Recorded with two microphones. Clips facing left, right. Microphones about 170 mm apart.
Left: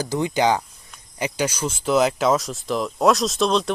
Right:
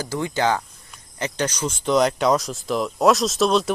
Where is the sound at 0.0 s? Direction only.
20° left (ahead or behind).